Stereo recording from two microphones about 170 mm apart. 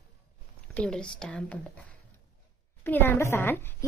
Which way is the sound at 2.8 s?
10° left (ahead or behind).